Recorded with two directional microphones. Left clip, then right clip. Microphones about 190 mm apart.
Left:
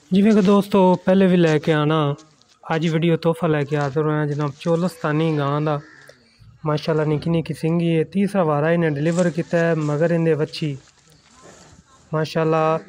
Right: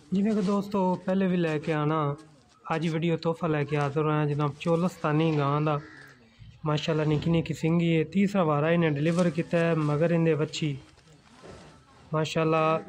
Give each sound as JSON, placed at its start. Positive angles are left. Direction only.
{"t": 0.1, "sound": "a man's voice", "side_deg": 50}
{"t": 6.6, "sound": "speech", "side_deg": 15}
{"t": 12.1, "sound": "speech", "side_deg": 15}